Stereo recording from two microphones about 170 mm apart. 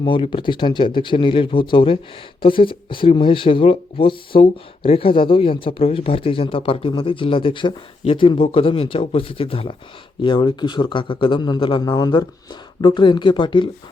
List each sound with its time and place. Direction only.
0.0 s a man's voice: 30° left (ahead or behind)